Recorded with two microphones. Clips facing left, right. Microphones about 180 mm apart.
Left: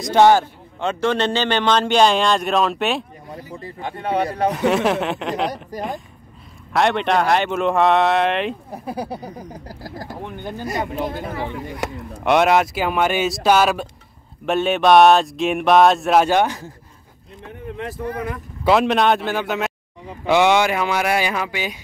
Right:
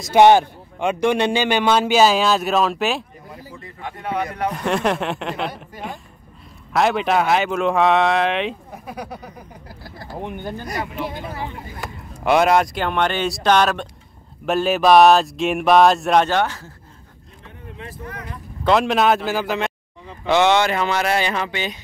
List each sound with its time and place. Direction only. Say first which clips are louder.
0.2 s a man's voice: right 1 dB; 15° right (ahead or behind); by 3.1 s centre (ahead or behind)
3.5 s a sound: left 5 dB; 30° left (ahead or behind)
4.6 s speech: left 2 dB; centre (ahead or behind)
5.5 s a sound: left 6 dB; 40° left (ahead or behind)
6.7 s speech: even; centre (ahead or behind)
8.7 s a sound: left 5 dB; 30° left (ahead or behind)
11.0 s speech: left 3 dB; 45° left (ahead or behind); by 11.9 s 70° left (ahead or behind)
12.2 s speech: even; centre (ahead or behind); by 16.7 s 15° left (ahead or behind)
17.7 s speech: left 7 dB; 75° left (ahead or behind)
18.6 s speech: left 1 dB; centre (ahead or behind)
20.1 s speech: left 1 dB; 10° left (ahead or behind)